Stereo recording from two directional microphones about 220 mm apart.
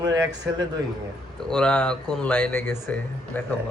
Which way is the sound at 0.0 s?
15° right (ahead or behind).